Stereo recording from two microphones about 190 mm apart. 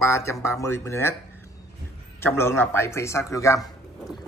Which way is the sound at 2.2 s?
15° left (ahead or behind).